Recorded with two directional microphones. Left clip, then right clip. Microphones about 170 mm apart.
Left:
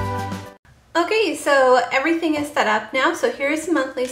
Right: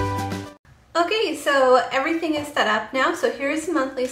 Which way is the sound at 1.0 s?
20° left (ahead or behind).